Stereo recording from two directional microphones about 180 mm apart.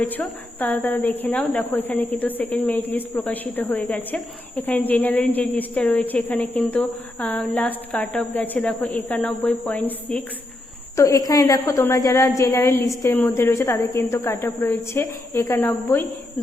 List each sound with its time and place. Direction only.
0.0 s speech: 10° left (ahead or behind)
10.9 s speech: 15° left (ahead or behind)